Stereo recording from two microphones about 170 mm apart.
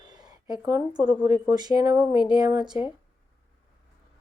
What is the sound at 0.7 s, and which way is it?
Speech, 25° right (ahead or behind).